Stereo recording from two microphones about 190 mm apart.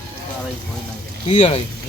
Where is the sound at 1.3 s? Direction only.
35° left (ahead or behind).